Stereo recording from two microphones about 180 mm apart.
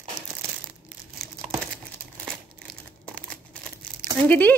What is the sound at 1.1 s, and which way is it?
Crumpling, centre (ahead or behind).